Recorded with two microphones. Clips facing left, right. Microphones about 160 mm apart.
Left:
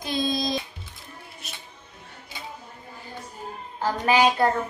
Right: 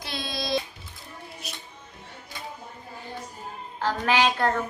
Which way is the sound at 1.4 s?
Centre (ahead or behind).